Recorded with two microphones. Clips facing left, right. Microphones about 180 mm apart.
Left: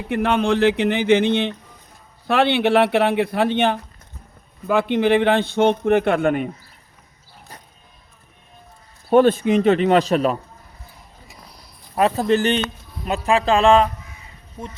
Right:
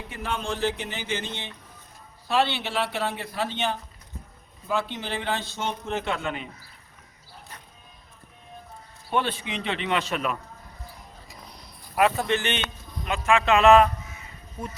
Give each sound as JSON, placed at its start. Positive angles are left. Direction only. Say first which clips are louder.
{"t": 0.1, "sound": "a man's voice", "louder": "left 13 dB", "side_deg": 65}
{"t": 9.0, "sound": "a man's voice", "louder": "left 13 dB", "side_deg": 45}
{"t": 11.9, "sound": "speech", "louder": "left 5 dB", "side_deg": 35}